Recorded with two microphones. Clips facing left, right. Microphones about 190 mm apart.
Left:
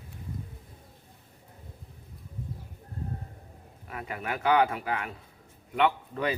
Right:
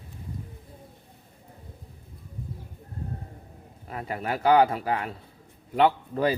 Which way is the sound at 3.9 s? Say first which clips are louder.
Right 4 dB; 35° right (ahead or behind).